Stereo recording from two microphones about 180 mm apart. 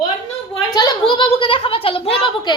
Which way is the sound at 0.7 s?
20° left (ahead or behind).